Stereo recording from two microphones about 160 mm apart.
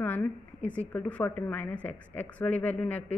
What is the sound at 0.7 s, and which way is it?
A woman's voice, 10° left (ahead or behind).